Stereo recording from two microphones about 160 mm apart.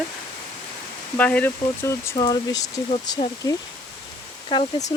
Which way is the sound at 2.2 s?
25° left (ahead or behind).